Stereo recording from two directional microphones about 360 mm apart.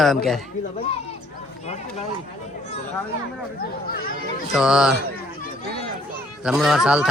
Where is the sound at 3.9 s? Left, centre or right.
Left.